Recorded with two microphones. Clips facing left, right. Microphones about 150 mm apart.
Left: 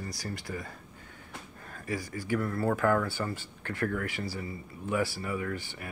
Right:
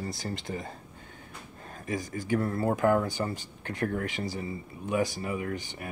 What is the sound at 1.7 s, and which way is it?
Speech, 20° right (ahead or behind).